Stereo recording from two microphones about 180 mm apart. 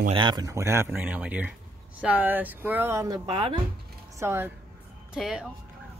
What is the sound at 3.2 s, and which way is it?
Speech, 30° right (ahead or behind).